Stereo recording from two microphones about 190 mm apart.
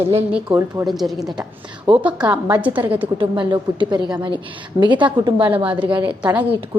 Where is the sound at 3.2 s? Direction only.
25° right (ahead or behind).